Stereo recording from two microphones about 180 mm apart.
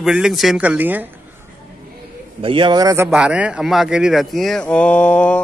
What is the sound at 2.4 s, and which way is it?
Speech, 25° right (ahead or behind).